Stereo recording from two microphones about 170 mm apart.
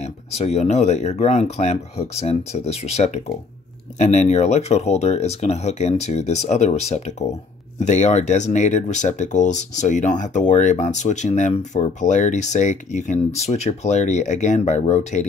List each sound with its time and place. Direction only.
0.0 s speech: 40° left (ahead or behind)